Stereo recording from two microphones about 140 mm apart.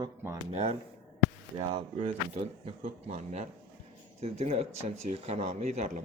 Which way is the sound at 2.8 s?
55° right (ahead or behind).